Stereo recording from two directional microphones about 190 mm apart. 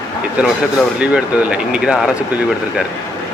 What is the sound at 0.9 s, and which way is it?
Speech, 5° right (ahead or behind).